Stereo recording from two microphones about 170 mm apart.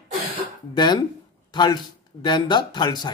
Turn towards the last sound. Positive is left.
turn(degrees=25)  # may be behind; listen again after turning